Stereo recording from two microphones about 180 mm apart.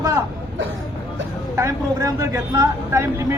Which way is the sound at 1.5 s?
15° right (ahead or behind).